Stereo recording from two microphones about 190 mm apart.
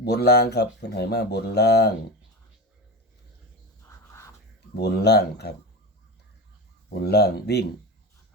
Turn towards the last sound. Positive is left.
turn(degrees=60)  # may be behind; listen again after turning